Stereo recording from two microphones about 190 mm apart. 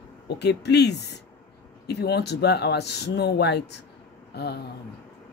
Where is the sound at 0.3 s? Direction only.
60° left (ahead or behind).